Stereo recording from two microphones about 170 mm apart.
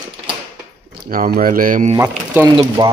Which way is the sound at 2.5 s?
25° right (ahead or behind).